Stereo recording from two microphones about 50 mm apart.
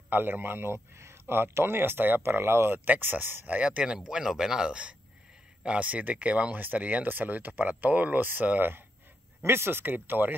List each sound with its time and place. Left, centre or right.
0.1 s speech: right
3.4 s speech: right
6.5 s speech: right
9.4 s speech: right